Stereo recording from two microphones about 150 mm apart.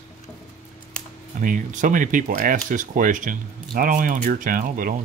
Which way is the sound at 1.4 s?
60° right (ahead or behind).